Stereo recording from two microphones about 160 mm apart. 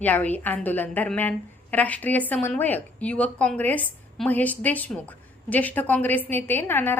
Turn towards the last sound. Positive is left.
turn(degrees=15)  # may be behind; listen again after turning